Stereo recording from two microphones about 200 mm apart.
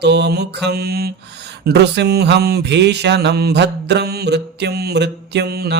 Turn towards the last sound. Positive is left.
turn(degrees=-55)  # may be behind; listen again after turning